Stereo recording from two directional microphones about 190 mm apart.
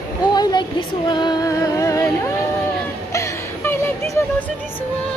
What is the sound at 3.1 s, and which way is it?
Music, 15° left (ahead or behind).